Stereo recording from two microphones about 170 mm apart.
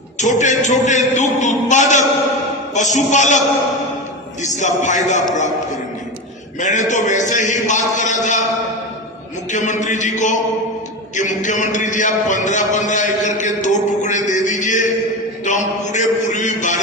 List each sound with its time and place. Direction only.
0.2 s a man's voice: 45° left (ahead or behind)
4.4 s a man's voice: 45° left (ahead or behind)
6.6 s a man's voice: 45° left (ahead or behind)
9.5 s a man's voice: 45° left (ahead or behind)